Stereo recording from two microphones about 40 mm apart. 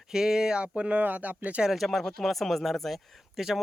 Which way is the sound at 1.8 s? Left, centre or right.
Centre.